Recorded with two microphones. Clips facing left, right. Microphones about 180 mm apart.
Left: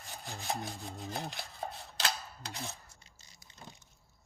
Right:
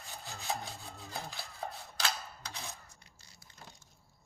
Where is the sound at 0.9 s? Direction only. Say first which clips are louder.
Left 4 dB; 20° left (ahead or behind).